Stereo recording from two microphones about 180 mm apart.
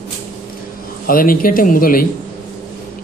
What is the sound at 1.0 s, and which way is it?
A man's voice, 50° left (ahead or behind).